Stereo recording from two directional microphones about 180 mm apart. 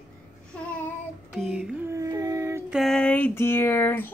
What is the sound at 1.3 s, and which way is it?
Child singing, 5° right (ahead or behind).